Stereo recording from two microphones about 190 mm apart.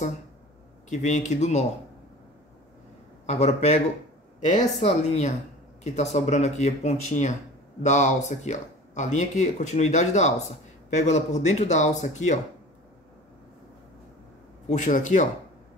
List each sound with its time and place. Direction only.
0.8 s speech: 40° left (ahead or behind)
3.3 s speech: 35° left (ahead or behind)
14.7 s speech: 40° left (ahead or behind)